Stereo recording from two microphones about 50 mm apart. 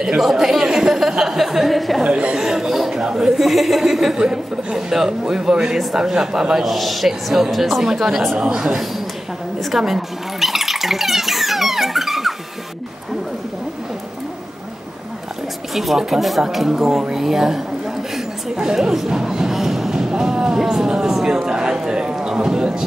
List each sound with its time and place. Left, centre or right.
0.0 s a man's voice: centre
2.0 s speech: right
2.4 s a man's voice: centre
3.3 s a man's voice: centre
8.4 s a man's voice: centre
9.8 s a sound: centre
15.7 s a man's voice: centre
18.1 s a sound: centre